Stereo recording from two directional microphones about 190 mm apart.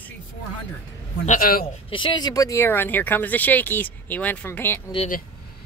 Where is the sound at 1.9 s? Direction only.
25° left (ahead or behind).